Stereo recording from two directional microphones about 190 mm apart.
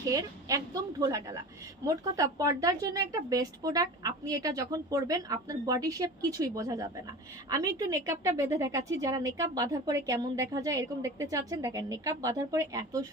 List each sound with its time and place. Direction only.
0.1 s a woman's voice: 20° right (ahead or behind)